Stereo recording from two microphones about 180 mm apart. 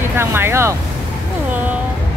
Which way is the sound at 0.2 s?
15° right (ahead or behind).